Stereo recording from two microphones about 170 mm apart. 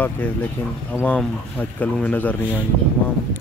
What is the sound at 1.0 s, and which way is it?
Speech, 10° left (ahead or behind).